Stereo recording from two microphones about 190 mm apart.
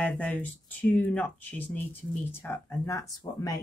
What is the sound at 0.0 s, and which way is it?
Speech, 5° left (ahead or behind).